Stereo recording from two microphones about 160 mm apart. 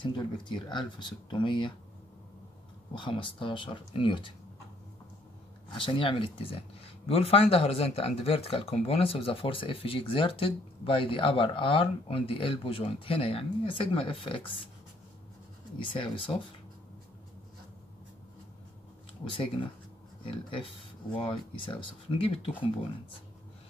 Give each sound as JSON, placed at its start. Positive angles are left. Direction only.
{"t": 0.0, "sound": "speech", "side_deg": 30}
{"t": 2.9, "sound": "speech", "side_deg": 30}
{"t": 5.8, "sound": "speech", "side_deg": 30}
{"t": 15.8, "sound": "speech", "side_deg": 35}
{"t": 19.2, "sound": "speech", "side_deg": 35}